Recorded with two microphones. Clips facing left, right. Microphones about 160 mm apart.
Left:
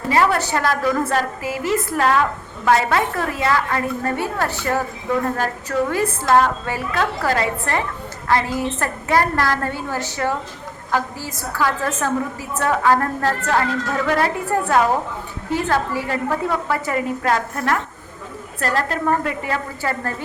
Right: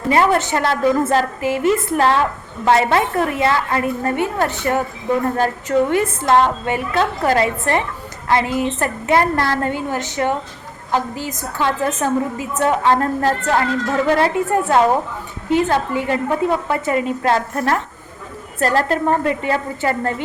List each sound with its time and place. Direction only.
0.1 s a woman's voice: 25° right (ahead or behind)